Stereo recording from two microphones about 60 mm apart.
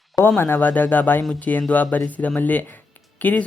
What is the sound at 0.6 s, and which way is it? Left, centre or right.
Speech, left.